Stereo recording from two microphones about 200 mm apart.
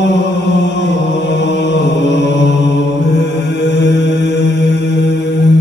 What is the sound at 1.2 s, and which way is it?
Mantra, 60° left (ahead or behind).